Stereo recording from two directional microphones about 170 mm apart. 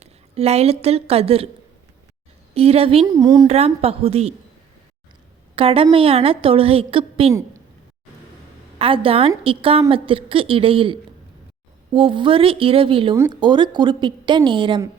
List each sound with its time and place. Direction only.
0.0 s a woman's voice: 40° right (ahead or behind)
2.6 s a woman's voice: 35° right (ahead or behind)
3.1 s speech: 20° right (ahead or behind)
3.4 s a woman's voice: 40° right (ahead or behind)
5.5 s a woman's voice: 35° right (ahead or behind)
8.8 s a woman's voice: 30° right (ahead or behind)